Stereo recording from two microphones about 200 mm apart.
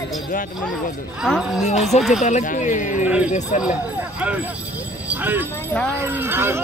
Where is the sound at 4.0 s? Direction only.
5° right (ahead or behind).